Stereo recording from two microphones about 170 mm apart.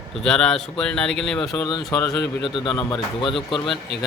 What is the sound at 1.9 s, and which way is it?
Speech, 20° left (ahead or behind).